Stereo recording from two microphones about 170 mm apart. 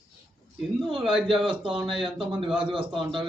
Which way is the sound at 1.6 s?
30° right (ahead or behind).